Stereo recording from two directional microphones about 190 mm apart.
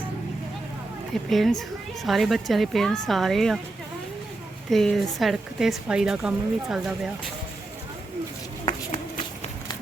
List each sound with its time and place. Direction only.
1.1 s a woman's voice: centre (ahead or behind)
4.7 s a woman's voice: centre (ahead or behind)
8.6 s a sound: 30° left (ahead or behind)